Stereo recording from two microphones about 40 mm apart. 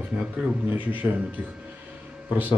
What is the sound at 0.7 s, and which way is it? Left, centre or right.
Speech, right.